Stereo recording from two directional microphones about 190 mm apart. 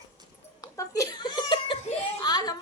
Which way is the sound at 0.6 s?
15° left (ahead or behind).